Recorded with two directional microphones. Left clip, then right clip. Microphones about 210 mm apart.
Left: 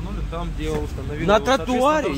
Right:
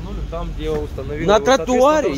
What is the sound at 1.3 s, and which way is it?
Speech, 20° right (ahead or behind).